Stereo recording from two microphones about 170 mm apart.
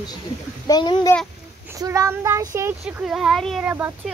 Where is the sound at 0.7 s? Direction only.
25° left (ahead or behind).